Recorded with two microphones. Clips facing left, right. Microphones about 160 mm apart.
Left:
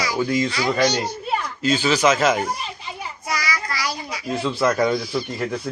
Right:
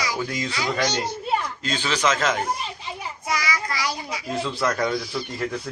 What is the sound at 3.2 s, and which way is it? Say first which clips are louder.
Child singing: even; 20° right (ahead or behind).